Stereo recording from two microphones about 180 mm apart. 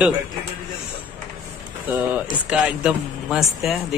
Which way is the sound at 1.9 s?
10° right (ahead or behind).